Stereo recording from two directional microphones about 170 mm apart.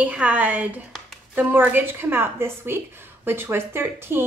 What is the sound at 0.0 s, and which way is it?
A woman's voice, 10° right (ahead or behind).